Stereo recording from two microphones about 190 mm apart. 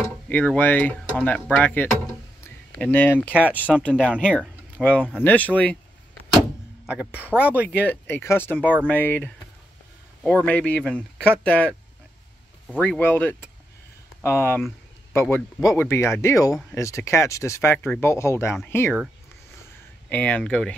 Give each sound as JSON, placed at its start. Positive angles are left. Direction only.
{"t": 0.3, "sound": "speech", "side_deg": 10}
{"t": 3.3, "sound": "speech", "side_deg": -5}
{"t": 4.2, "sound": "speech", "side_deg": 5}
{"t": 6.9, "sound": "speech", "side_deg": -5}
{"t": 7.8, "sound": "speech", "side_deg": 10}
{"t": 8.5, "sound": "speech", "side_deg": -10}
{"t": 8.8, "sound": "speech", "side_deg": 10}
{"t": 12.7, "sound": "speech", "side_deg": 10}
{"t": 20.1, "sound": "speech", "side_deg": 5}